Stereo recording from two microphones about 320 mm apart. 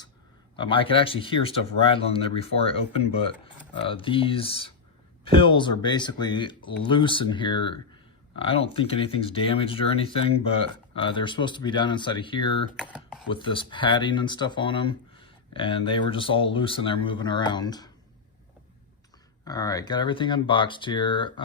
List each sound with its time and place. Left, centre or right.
0.5 s speech: centre
12.8 s speech: centre
13.3 s speech: centre
19.5 s speech: centre